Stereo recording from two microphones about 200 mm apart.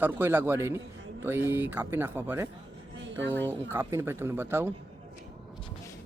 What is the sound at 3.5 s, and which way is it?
Speech, 10° right (ahead or behind).